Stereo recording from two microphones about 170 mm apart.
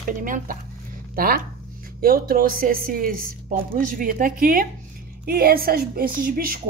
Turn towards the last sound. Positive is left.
turn(degrees=-55)  # may be behind; listen again after turning